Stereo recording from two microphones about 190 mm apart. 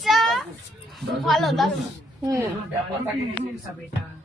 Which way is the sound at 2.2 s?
15° right (ahead or behind).